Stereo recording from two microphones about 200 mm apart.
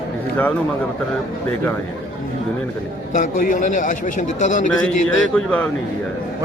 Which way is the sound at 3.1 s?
40° left (ahead or behind).